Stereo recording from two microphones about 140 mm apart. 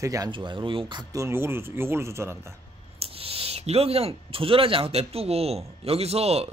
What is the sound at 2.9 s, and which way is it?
Speech, 45° right (ahead or behind).